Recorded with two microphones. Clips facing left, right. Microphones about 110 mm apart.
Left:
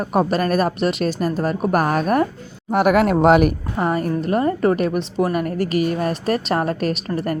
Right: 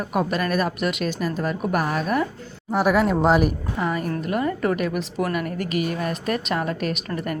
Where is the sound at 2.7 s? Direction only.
65° left (ahead or behind).